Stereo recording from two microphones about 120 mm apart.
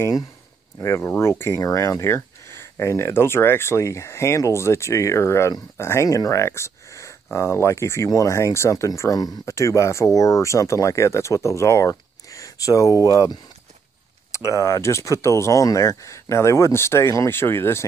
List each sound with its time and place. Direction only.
0.7 s speech: 25° left (ahead or behind)